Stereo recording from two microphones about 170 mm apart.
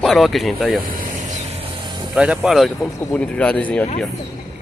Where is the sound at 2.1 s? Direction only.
5° right (ahead or behind).